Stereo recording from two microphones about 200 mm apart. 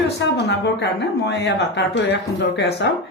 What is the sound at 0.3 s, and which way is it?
Speech, 55° left (ahead or behind).